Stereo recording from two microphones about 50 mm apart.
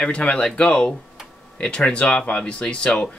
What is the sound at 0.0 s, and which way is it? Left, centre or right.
Speech, left.